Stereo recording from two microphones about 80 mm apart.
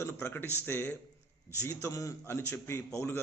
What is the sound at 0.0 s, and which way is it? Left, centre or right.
Speech, left.